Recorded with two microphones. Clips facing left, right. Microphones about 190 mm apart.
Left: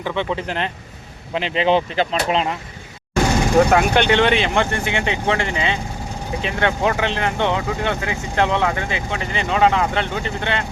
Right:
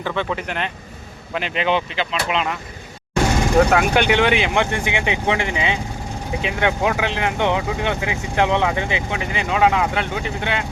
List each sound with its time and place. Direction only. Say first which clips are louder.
0.0 s speech: left 1 dB; 20° left (ahead or behind); by 2.6 s 35° left (ahead or behind)
3.7 s speech: left 1 dB; 5° right (ahead or behind)